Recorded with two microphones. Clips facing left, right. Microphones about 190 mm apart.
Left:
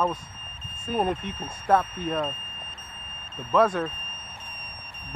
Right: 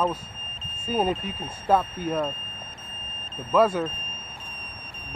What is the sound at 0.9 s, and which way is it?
Speech, centre (ahead or behind).